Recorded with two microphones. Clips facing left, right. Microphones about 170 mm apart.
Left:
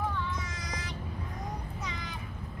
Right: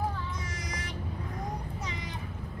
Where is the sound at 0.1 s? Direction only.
30° right (ahead or behind).